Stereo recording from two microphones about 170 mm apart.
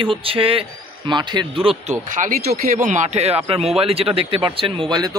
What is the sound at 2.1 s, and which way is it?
A man's voice, 55° right (ahead or behind).